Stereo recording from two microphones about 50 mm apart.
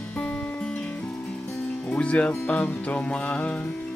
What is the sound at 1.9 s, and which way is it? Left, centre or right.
Music, left.